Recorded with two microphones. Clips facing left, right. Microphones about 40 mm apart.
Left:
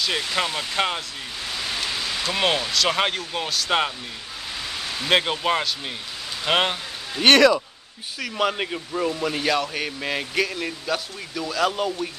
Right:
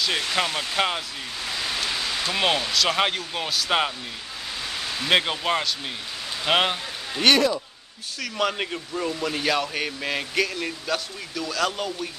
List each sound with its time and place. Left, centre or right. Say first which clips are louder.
0.0 s a man's voice: even; centre
2.3 s a man's voice: left 1 dB; centre
5.0 s a man's voice: left 1 dB; centre
7.3 s speech: left 6 dB; left
8.2 s a man's voice: left 2 dB; centre